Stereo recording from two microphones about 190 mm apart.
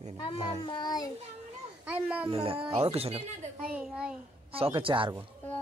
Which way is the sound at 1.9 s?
5° right (ahead or behind).